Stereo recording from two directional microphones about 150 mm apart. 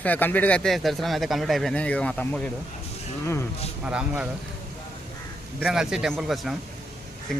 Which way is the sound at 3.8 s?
5° right (ahead or behind).